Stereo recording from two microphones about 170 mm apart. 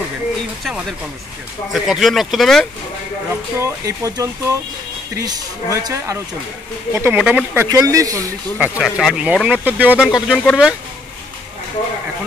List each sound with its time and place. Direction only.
0.7 s speech: centre (ahead or behind)
3.5 s speech: 15° right (ahead or behind)
7.6 s speech: 20° right (ahead or behind)
8.5 s speech: 10° right (ahead or behind)